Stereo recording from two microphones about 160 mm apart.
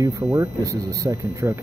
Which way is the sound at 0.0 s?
20° right (ahead or behind).